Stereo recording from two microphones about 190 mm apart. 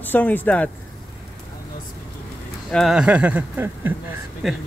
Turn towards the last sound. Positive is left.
turn(degrees=0)  # may be behind; listen again after turning